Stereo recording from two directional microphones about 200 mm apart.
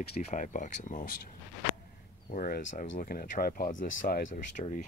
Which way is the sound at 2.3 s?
40° left (ahead or behind).